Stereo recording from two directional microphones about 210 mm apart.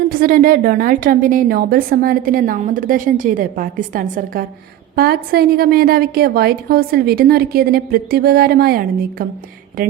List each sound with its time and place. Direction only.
0.1 s a woman's voice: 40° right (ahead or behind)